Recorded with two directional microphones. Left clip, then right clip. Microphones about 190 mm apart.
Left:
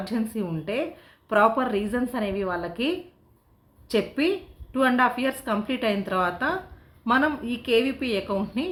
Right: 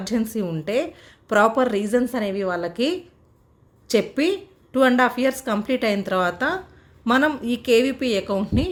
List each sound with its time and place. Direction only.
0.0 s a woman's voice: 35° right (ahead or behind)